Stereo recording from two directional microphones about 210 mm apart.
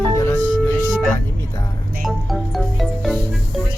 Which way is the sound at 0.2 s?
10° left (ahead or behind).